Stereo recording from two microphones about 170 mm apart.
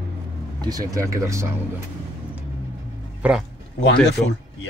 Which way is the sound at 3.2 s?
5° right (ahead or behind).